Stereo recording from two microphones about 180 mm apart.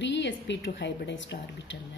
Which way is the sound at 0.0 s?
85° left.